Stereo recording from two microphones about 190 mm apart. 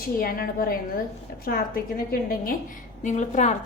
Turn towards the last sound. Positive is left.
turn(degrees=40)  # may be behind; listen again after turning